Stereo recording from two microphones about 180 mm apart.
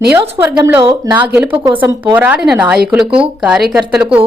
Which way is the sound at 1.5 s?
30° right (ahead or behind).